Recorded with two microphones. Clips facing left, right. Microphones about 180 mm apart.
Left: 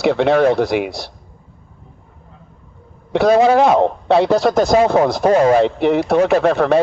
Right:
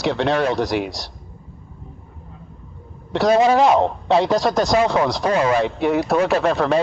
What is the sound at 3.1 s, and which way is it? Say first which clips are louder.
A man's voice: left 3 dB; 55° left (ahead or behind).